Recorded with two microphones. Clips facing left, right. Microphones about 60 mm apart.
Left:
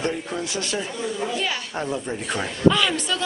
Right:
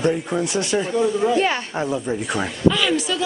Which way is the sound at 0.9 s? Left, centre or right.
Right.